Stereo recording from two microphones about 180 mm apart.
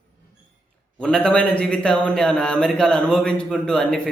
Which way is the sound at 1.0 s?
5° left (ahead or behind).